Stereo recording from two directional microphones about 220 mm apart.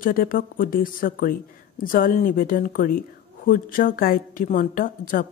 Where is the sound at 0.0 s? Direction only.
40° left (ahead or behind).